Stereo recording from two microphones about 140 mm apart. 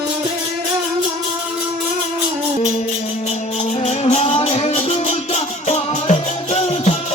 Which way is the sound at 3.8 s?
50° left (ahead or behind).